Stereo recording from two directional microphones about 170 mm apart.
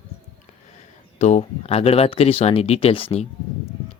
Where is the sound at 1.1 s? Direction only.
40° left (ahead or behind).